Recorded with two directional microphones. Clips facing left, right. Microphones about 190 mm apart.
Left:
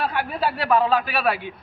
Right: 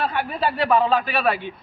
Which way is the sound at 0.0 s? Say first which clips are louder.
Right 1 dB; 5° left (ahead or behind).